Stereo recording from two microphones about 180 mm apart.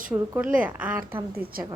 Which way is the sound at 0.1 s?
5° right (ahead or behind).